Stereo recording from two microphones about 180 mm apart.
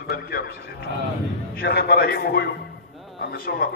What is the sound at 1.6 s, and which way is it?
Speech, 60° left (ahead or behind).